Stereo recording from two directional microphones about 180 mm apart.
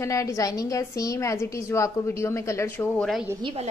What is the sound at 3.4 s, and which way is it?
Speech, 30° right (ahead or behind).